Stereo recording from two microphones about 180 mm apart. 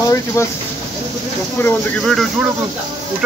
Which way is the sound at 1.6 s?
Centre (ahead or behind).